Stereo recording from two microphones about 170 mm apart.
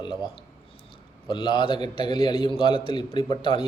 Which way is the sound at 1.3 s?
30° left (ahead or behind).